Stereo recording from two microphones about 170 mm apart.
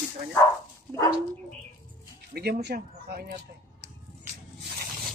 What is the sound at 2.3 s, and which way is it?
Speech, 70° right (ahead or behind).